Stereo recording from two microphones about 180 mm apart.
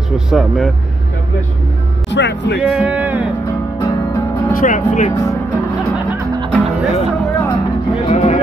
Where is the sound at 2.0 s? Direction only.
75° left (ahead or behind).